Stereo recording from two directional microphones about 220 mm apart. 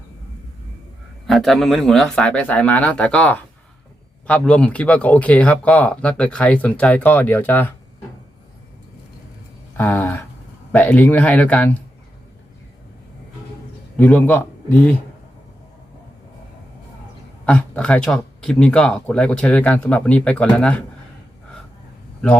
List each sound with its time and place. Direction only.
1.3 s speech: centre (ahead or behind)
9.7 s speech: 10° left (ahead or behind)
13.9 s a man's voice: 5° left (ahead or behind)
17.4 s speech: 5° left (ahead or behind)